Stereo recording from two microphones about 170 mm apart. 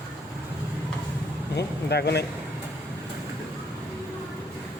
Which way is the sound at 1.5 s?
75° left (ahead or behind).